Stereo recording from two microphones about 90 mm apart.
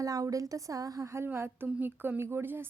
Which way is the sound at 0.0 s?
40° right (ahead or behind).